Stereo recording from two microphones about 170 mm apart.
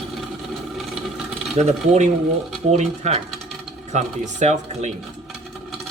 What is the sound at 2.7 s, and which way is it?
Speech, 40° right (ahead or behind).